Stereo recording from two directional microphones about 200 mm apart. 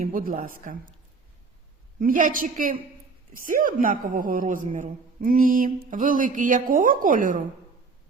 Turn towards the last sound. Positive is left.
turn(degrees=-45)  # may be behind; listen again after turning